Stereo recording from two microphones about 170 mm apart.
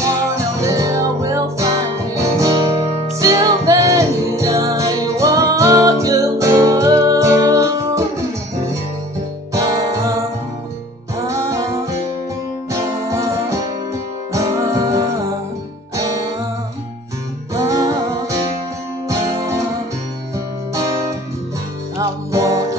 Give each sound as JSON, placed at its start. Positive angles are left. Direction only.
{"t": 0.0, "sound": "music", "side_deg": -20}
{"t": 9.5, "sound": "music", "side_deg": -20}
{"t": 11.1, "sound": "music", "side_deg": -20}
{"t": 17.6, "sound": "music", "side_deg": -20}
{"t": 19.0, "sound": "guitar", "side_deg": -20}
{"t": 20.7, "sound": "music", "side_deg": -20}